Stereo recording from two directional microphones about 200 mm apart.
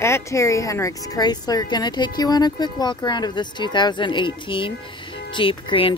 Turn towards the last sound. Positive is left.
turn(degrees=25)  # may be behind; listen again after turning